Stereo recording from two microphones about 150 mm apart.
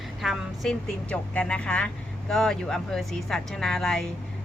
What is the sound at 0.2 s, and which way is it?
A woman's voice, centre (ahead or behind).